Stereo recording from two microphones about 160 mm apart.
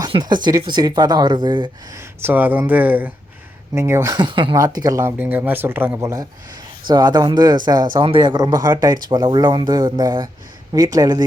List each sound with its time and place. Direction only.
0.0 s speech: 25° right (ahead or behind)
2.2 s speech: 10° right (ahead or behind)